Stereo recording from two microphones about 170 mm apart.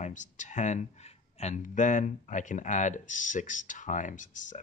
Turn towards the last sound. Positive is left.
turn(degrees=45)  # may be behind; listen again after turning